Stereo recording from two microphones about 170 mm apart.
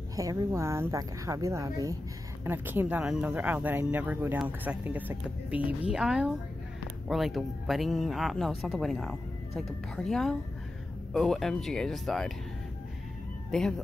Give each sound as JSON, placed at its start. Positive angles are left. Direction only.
{"t": 0.1, "sound": "speech", "side_deg": -20}
{"t": 13.5, "sound": "speech", "side_deg": 5}